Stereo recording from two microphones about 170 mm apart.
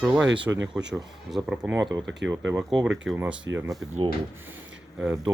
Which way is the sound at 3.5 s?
90° right.